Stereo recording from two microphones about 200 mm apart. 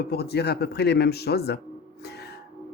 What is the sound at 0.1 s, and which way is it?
Speech, 55° left (ahead or behind).